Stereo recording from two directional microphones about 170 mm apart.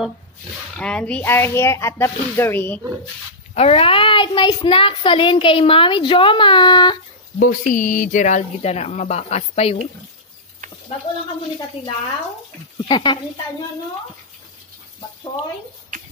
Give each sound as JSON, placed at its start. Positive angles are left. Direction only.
{"t": 0.7, "sound": "speech", "side_deg": 5}
{"t": 3.5, "sound": "a child's voice", "side_deg": 35}
{"t": 7.3, "sound": "speech", "side_deg": 55}
{"t": 12.7, "sound": "a child's voice", "side_deg": 25}